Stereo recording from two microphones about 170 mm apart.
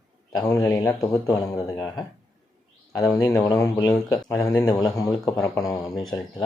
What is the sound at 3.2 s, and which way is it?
Speech, 25° left (ahead or behind).